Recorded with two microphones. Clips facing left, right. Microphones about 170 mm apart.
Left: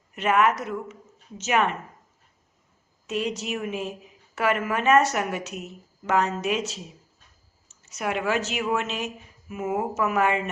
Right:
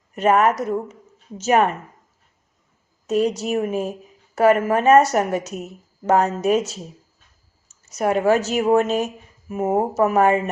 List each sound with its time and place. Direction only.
0.1 s a woman's voice: 40° right (ahead or behind)
3.1 s a woman's voice: 40° right (ahead or behind)
7.9 s a woman's voice: 40° right (ahead or behind)